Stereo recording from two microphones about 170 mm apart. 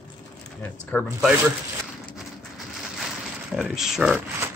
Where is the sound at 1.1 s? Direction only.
10° right (ahead or behind).